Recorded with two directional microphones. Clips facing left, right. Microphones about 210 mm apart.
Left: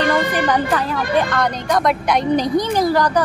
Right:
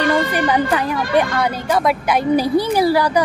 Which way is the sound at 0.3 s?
10° right (ahead or behind).